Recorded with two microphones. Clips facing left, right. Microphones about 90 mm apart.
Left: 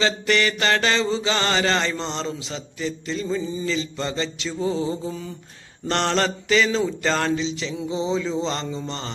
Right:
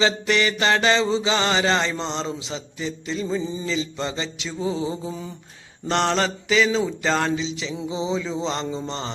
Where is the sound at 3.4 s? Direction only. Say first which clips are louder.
Left 1 dB; 25° right (ahead or behind).